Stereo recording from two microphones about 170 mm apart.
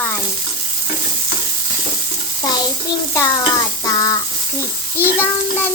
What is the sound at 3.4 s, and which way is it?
Stir, 20° left (ahead or behind).